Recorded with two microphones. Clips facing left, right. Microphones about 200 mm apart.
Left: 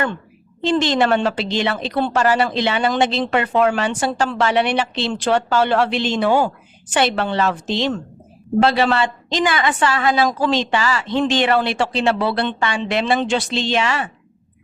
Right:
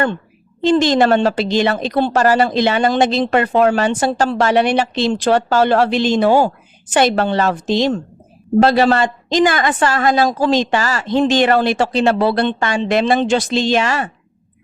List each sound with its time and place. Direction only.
0.6 s a woman's voice: 40° right (ahead or behind)